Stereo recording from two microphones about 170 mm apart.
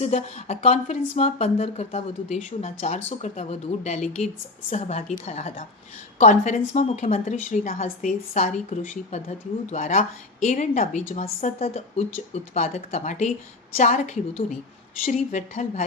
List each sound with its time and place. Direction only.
0.0 s a woman's voice: 40° left (ahead or behind)